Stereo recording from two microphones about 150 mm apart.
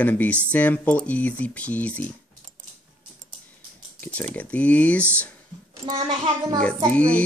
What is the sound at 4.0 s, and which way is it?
Typing, 10° left (ahead or behind).